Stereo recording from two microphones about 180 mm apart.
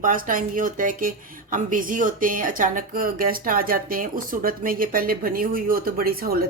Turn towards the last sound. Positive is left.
turn(degrees=-55)  # may be behind; listen again after turning